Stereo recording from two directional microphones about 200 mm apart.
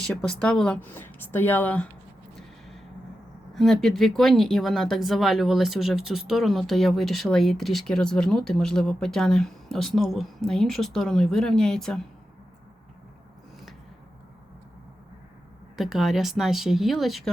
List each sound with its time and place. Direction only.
0.1 s speech: 5° left (ahead or behind)
3.5 s speech: centre (ahead or behind)
15.8 s speech: centre (ahead or behind)